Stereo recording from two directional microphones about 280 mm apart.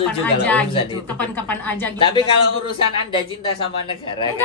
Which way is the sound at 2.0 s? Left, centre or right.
Centre.